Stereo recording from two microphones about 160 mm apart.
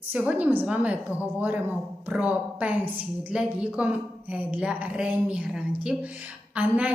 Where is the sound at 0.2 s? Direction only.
5° right (ahead or behind).